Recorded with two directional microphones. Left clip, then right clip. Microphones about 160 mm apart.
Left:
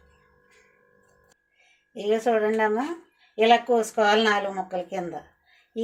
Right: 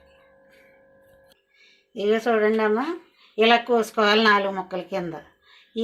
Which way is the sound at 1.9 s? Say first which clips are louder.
Right 2 dB; 35° right (ahead or behind).